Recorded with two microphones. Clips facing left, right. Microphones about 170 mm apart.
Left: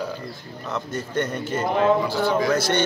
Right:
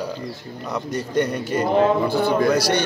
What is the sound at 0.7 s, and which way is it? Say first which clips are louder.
Speech: right 3 dB; 15° right (ahead or behind).